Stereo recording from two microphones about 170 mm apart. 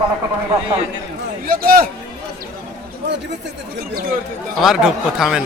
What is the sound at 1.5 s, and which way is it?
Speech, 60° right (ahead or behind).